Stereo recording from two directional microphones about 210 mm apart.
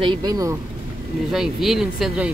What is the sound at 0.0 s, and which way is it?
Speech, 20° right (ahead or behind).